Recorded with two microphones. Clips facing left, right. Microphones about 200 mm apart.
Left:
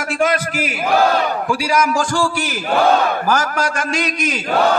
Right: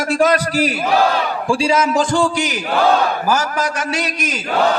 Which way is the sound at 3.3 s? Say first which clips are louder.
Even; 5° right (ahead or behind).